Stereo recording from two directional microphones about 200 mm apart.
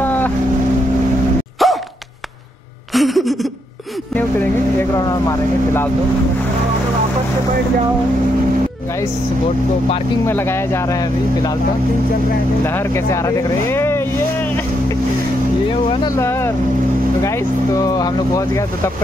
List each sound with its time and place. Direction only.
0.0 s boat: 10° left (ahead or behind)
1.6 s dog: centre (ahead or behind)
2.9 s a sound: centre (ahead or behind)
4.4 s speech: 10° left (ahead or behind)
10.2 s speech: 10° left (ahead or behind)
12.6 s speech: 10° left (ahead or behind)
16.2 s speech: 15° left (ahead or behind)
17.7 s speech: 20° left (ahead or behind)